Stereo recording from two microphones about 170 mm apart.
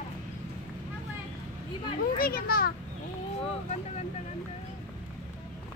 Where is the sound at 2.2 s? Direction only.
60° left (ahead or behind).